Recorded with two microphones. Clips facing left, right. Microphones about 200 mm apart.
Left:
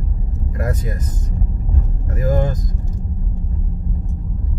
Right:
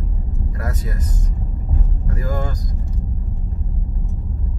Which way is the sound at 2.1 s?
20° left (ahead or behind).